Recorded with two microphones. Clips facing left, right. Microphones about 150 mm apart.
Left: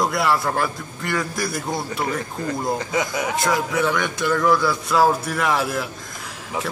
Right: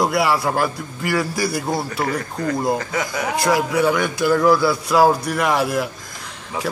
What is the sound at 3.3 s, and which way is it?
Speech, centre (ahead or behind).